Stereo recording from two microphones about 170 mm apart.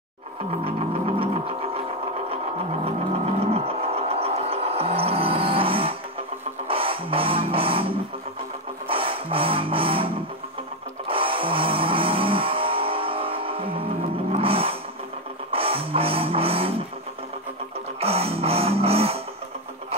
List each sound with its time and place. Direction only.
0.7 s music: 35° right (ahead or behind)
2.8 s a sound: 35° right (ahead or behind)
6.7 s music: 35° right (ahead or behind)
11.1 s music: 30° right (ahead or behind)
18.0 s music: 35° right (ahead or behind)